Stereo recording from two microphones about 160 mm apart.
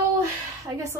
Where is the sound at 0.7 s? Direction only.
20° right (ahead or behind).